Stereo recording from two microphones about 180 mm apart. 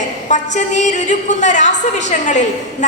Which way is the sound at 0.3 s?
40° left (ahead or behind).